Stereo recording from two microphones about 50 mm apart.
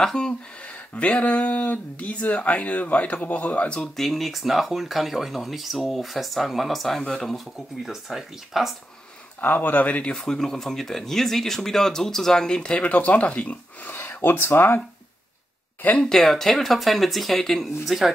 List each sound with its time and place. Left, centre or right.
0.0 s speech: centre
0.6 s speech: left
3.6 s speech: centre
3.9 s speech: centre
7.5 s speech: centre
9.4 s speech: left
10.1 s speech: centre
12.8 s speech: left
14.2 s speech: left
16.0 s speech: centre